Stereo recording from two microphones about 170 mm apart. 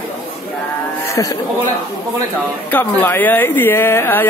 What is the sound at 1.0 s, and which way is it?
Speech, 20° left (ahead or behind).